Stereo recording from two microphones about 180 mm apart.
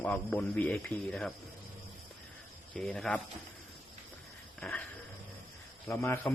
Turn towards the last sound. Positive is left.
turn(degrees=15)  # may be behind; listen again after turning